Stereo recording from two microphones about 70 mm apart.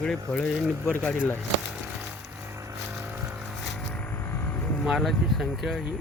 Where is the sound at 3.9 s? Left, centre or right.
Left.